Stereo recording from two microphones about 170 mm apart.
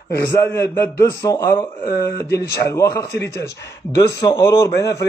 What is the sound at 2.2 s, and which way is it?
Speech, 75° left (ahead or behind).